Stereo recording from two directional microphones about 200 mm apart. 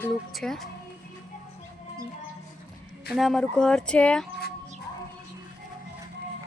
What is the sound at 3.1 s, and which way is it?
Speech, centre (ahead or behind).